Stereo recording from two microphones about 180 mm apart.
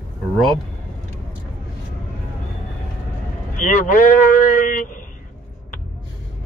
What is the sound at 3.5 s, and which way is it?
Speech, 45° left (ahead or behind).